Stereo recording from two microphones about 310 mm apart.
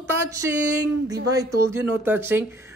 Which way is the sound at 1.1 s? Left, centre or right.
Centre.